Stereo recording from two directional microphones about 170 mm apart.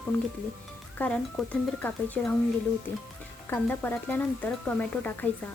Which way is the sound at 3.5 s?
10° left (ahead or behind).